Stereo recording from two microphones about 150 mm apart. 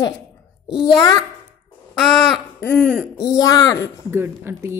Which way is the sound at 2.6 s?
15° left (ahead or behind).